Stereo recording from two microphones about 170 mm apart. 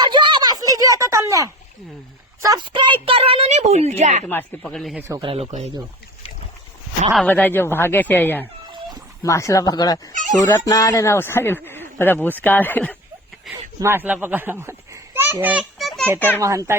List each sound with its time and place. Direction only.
0.0 s a sound: 25° right (ahead or behind)
2.4 s a woman's voice: 25° right (ahead or behind); by 4.2 s 40° right (ahead or behind)
4.3 s speech: 10° left (ahead or behind)
5.2 s a woman's voice: 35° right (ahead or behind)
7.3 s speech: 10° left (ahead or behind)
10.1 s speech: 50° right (ahead or behind)
10.5 s speech: 20° left (ahead or behind)
13.7 s a child's voice: 15° right (ahead or behind)
16.4 s speech: 20° right (ahead or behind)